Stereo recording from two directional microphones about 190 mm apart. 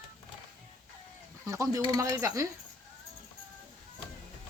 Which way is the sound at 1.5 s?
15° right (ahead or behind).